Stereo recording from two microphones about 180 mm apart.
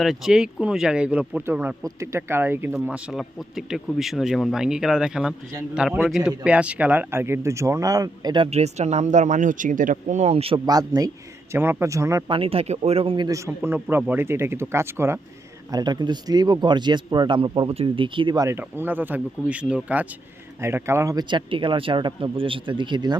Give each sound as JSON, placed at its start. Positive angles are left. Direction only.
{"t": 0.0, "sound": "a man's voice", "side_deg": 0}
{"t": 8.4, "sound": "a man's voice", "side_deg": -35}
{"t": 12.3, "sound": "a man's voice", "side_deg": -30}